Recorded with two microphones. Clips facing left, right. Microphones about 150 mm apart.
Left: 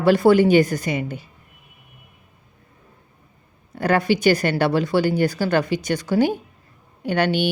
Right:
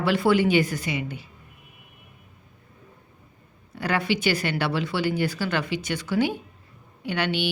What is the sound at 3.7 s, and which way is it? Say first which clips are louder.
Speech: left 6 dB; 45° left (ahead or behind).